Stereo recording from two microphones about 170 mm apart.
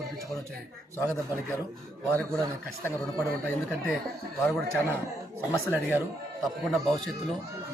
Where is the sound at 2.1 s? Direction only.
5° left (ahead or behind).